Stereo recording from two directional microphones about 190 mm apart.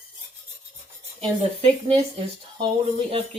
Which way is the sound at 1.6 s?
30° right (ahead or behind).